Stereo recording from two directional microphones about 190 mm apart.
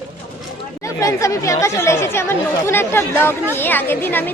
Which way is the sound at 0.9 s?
15° left (ahead or behind).